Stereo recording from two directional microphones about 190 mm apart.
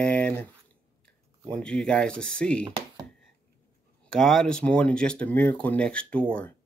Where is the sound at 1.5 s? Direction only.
5° left (ahead or behind).